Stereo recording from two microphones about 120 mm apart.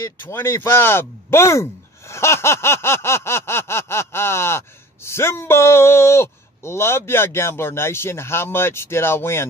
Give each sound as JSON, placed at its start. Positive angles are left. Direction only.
{"t": 0.2, "sound": "speech", "side_deg": 20}